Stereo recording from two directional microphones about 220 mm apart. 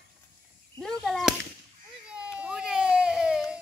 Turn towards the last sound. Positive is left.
turn(degrees=0)  # may be behind; listen again after turning